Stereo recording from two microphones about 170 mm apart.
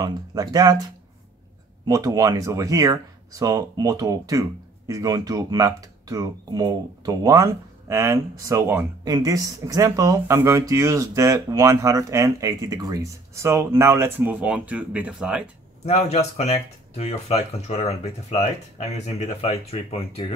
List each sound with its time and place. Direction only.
0.0 s speech: 20° right (ahead or behind); by 15.5 s 5° right (ahead or behind)
15.8 s speech: 40° left (ahead or behind)